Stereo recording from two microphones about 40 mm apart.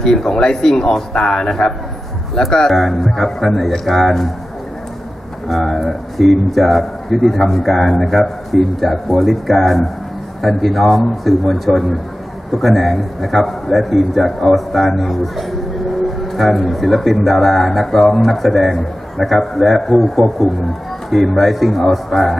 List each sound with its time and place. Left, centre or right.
0.0 s speech: centre
2.7 s a man's voice: centre
5.5 s a man's voice: centre